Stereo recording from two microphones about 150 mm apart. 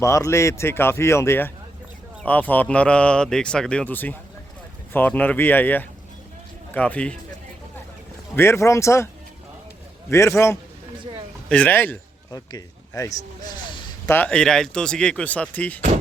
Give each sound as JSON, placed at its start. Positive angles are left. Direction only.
{"t": 0.0, "sound": "speech", "side_deg": 20}
{"t": 8.4, "sound": "speech", "side_deg": 20}
{"t": 10.1, "sound": "speech", "side_deg": 20}
{"t": 12.3, "sound": "speech", "side_deg": 25}
{"t": 14.1, "sound": "speech", "side_deg": 10}